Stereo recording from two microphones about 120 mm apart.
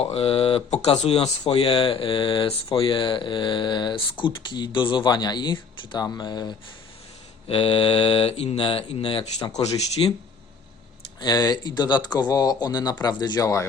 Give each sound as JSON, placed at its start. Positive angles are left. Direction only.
{"t": 0.0, "sound": "speech", "side_deg": 55}
{"t": 7.4, "sound": "speech", "side_deg": 50}
{"t": 9.5, "sound": "speech", "side_deg": 60}
{"t": 11.2, "sound": "speech", "side_deg": 30}